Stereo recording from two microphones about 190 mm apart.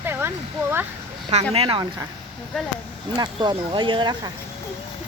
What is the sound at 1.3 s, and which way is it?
Speech, 35° right (ahead or behind).